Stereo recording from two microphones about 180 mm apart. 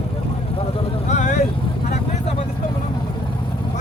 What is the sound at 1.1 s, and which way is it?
Speech, 40° left (ahead or behind).